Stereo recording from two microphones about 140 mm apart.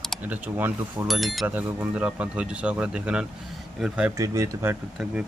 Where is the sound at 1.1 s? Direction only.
Centre (ahead or behind).